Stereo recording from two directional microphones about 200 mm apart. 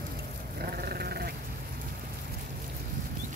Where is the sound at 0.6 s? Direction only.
50° right (ahead or behind).